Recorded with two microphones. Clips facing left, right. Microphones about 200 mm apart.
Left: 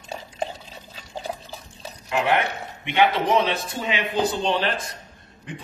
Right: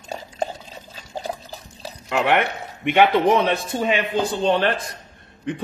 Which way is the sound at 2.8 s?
55° right (ahead or behind).